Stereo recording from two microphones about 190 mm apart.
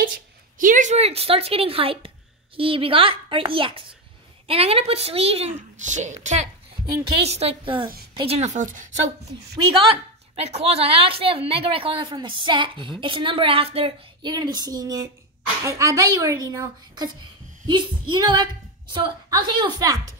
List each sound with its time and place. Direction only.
0.6 s a woman's voice: 45° right (ahead or behind)
9.8 s speech: 35° right (ahead or behind)